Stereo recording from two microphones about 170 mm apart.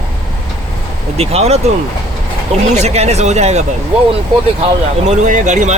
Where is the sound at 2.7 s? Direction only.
40° right (ahead or behind).